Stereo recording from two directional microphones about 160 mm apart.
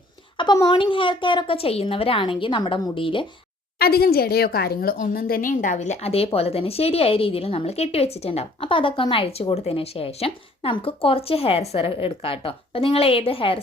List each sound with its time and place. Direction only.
0.3 s a woman's voice: 25° left (ahead or behind)
3.8 s a woman's voice: 70° left (ahead or behind); by 13.6 s 35° left (ahead or behind)